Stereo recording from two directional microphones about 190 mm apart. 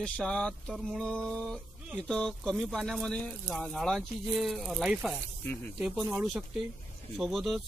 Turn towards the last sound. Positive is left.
turn(degrees=0)  # may be behind; listen again after turning